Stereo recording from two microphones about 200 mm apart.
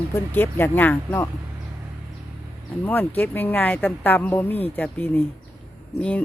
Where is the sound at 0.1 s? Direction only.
10° left (ahead or behind).